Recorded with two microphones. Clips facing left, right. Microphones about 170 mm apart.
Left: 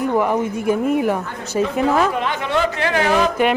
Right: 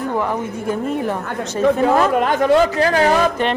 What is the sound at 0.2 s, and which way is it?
Speech, 15° left (ahead or behind).